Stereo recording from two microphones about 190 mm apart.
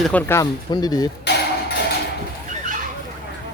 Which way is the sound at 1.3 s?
60° left (ahead or behind).